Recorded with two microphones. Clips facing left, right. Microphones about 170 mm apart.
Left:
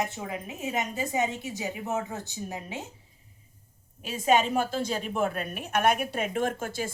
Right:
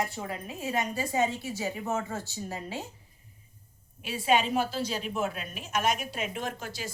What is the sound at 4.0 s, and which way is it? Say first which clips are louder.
A woman's voice: left 2 dB; 45° left (ahead or behind).